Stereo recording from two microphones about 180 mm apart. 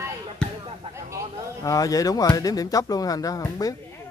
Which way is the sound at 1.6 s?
20° left (ahead or behind).